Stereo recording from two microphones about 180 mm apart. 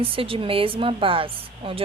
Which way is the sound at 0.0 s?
30° right (ahead or behind).